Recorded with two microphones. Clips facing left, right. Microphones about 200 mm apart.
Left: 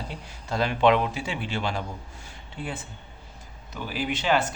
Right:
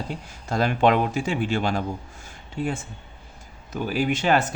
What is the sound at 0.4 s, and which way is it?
Speech, 45° right (ahead or behind).